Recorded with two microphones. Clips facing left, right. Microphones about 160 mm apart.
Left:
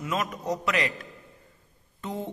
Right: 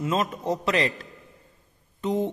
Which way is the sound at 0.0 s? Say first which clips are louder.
Right 4 dB; 30° right (ahead or behind).